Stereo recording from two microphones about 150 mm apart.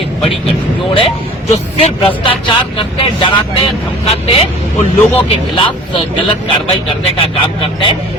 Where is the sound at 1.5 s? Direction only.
40° left (ahead or behind).